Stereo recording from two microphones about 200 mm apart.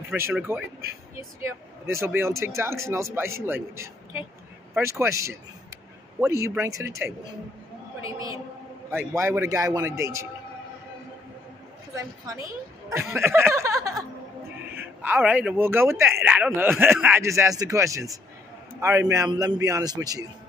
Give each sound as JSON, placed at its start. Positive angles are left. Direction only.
{"t": 0.1, "sound": "speech", "side_deg": -10}
{"t": 1.9, "sound": "speech", "side_deg": -15}
{"t": 11.9, "sound": "a woman's voice", "side_deg": -15}